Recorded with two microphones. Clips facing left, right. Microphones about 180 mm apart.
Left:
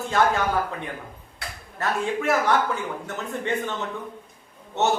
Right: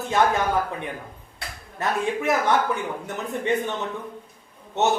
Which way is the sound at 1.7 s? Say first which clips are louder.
Right 1 dB; 15° right (ahead or behind).